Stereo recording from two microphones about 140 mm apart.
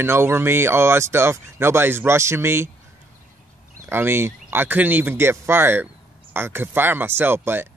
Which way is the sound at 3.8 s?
15° right (ahead or behind).